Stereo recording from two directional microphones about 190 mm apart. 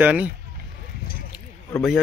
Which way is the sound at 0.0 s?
10° right (ahead or behind).